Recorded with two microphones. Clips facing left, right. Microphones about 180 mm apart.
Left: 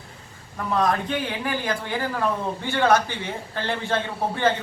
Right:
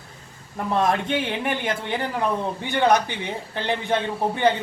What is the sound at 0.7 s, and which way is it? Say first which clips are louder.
A man's voice: right 1 dB; 25° right (ahead or behind).